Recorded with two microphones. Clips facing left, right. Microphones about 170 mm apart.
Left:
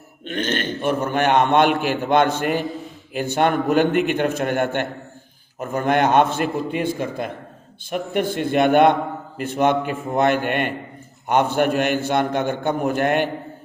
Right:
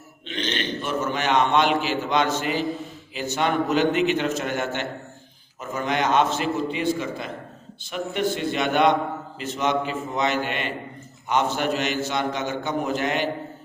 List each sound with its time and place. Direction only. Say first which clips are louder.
0.3 s a man's voice: left 4 dB; 50° left (ahead or behind)